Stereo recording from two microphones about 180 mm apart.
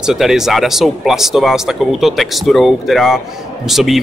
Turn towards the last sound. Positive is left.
turn(degrees=0)  # may be behind; listen again after turning